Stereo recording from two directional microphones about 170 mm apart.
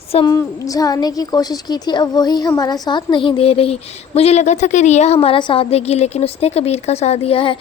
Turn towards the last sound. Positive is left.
turn(degrees=30)  # may be behind; listen again after turning